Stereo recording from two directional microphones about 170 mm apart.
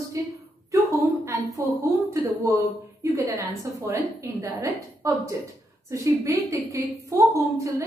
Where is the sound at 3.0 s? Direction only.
15° right (ahead or behind).